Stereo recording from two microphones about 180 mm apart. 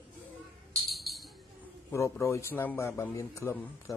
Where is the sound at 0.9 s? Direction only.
Centre (ahead or behind).